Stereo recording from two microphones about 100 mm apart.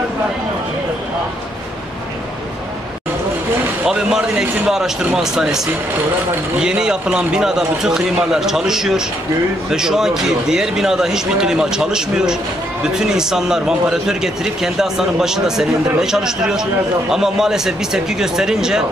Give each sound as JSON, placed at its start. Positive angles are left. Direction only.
{"t": 3.8, "sound": "a man's voice", "side_deg": -5}
{"t": 6.6, "sound": "a man's voice", "side_deg": -10}